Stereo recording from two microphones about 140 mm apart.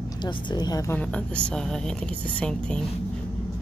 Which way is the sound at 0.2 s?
30° left (ahead or behind).